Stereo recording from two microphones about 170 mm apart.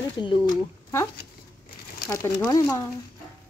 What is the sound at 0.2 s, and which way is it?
Speech, 20° left (ahead or behind).